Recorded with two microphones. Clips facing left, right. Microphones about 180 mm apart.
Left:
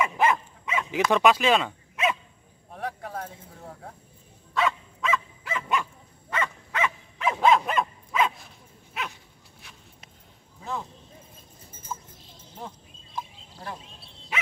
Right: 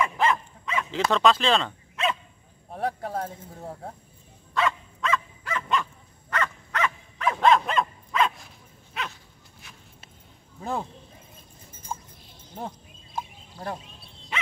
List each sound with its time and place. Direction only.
0.0 s dog: 15° left (ahead or behind)
1.1 s speech: 10° left (ahead or behind)
2.7 s speech: 35° right (ahead or behind)
4.6 s dog: centre (ahead or behind); by 7.3 s 15° left (ahead or behind)
7.3 s dog: 5° left (ahead or behind)
10.6 s speech: 50° right (ahead or behind)
12.5 s a sound: 50° right (ahead or behind)